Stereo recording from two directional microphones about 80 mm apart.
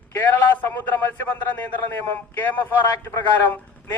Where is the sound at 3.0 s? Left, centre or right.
Left.